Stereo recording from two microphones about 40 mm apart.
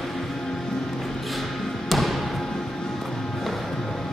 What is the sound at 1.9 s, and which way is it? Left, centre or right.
Music, centre.